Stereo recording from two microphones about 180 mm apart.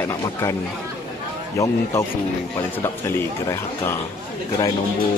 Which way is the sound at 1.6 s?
15° left (ahead or behind).